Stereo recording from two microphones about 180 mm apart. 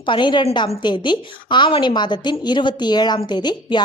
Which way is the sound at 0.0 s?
25° left (ahead or behind).